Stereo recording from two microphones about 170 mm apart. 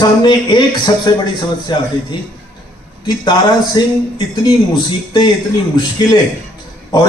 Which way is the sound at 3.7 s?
25° left (ahead or behind).